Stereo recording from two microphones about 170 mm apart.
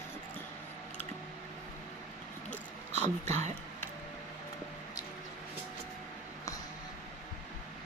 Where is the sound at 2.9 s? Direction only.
40° right (ahead or behind).